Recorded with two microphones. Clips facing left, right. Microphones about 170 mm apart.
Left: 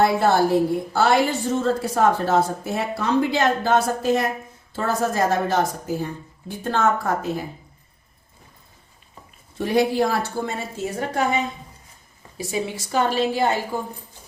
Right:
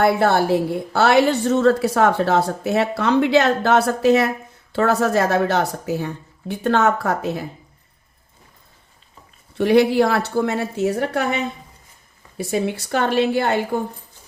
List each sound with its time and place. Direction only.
0.0 s a woman's voice: 65° right (ahead or behind)
9.6 s a woman's voice: 70° right (ahead or behind)